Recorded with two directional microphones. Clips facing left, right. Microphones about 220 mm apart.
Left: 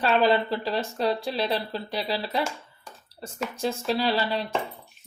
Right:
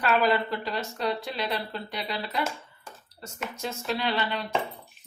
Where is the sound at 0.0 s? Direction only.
30° left (ahead or behind).